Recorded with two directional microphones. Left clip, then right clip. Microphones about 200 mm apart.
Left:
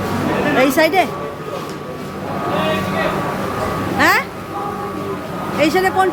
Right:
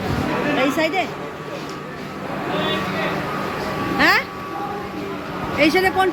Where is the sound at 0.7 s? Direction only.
25° left (ahead or behind).